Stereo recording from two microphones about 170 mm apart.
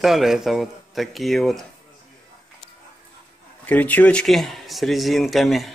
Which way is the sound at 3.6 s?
10° left (ahead or behind).